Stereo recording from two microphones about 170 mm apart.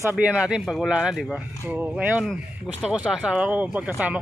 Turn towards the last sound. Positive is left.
turn(degrees=-5)  # may be behind; listen again after turning